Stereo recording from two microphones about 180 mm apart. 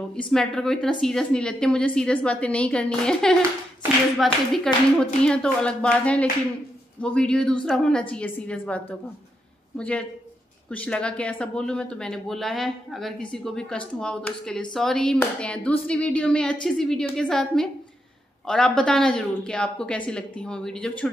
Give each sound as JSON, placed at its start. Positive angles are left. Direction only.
{"t": 0.1, "sound": "a woman's voice", "side_deg": 5}